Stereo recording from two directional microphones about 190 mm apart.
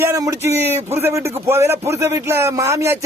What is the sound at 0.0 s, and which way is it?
Speech, 15° right (ahead or behind).